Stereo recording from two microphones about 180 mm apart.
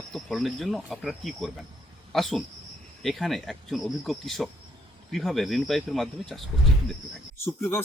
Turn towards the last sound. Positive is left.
turn(degrees=10)  # may be behind; listen again after turning